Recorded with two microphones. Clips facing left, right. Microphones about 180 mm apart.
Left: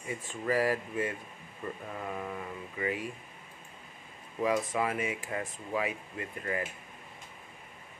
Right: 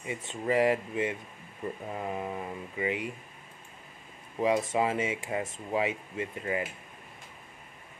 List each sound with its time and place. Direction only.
0.0 s speech: 20° right (ahead or behind)
4.4 s speech: 25° right (ahead or behind)